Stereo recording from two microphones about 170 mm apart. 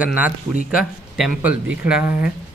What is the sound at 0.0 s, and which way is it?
A man's voice, 5° right (ahead or behind).